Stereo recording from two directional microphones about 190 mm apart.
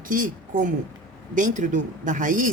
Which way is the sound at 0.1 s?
45° right (ahead or behind).